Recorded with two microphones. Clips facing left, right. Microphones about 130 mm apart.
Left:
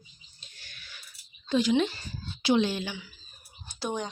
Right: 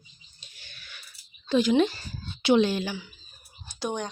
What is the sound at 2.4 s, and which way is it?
Speech, 55° right (ahead or behind).